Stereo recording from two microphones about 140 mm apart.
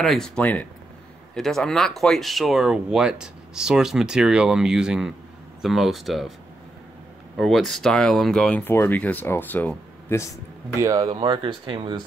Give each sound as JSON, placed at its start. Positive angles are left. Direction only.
{"t": 0.0, "sound": "speech", "side_deg": 5}
{"t": 7.3, "sound": "speech", "side_deg": 0}
{"t": 10.8, "sound": "speech", "side_deg": -25}
{"t": 11.1, "sound": "speech", "side_deg": -35}